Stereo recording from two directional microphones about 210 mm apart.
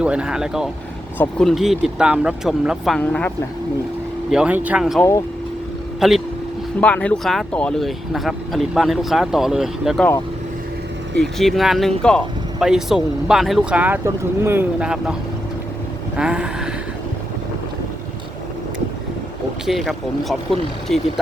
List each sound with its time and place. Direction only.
0.0 s speech: 5° right (ahead or behind)
4.3 s speech: 5° right (ahead or behind)
11.2 s speech: centre (ahead or behind)
16.1 s speech: 5° right (ahead or behind)
19.6 s speech: centre (ahead or behind)